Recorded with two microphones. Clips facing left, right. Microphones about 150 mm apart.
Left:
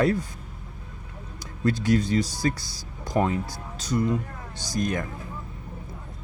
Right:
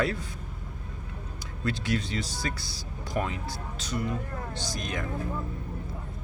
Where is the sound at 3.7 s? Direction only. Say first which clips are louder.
Left 8 dB; 40° left (ahead or behind).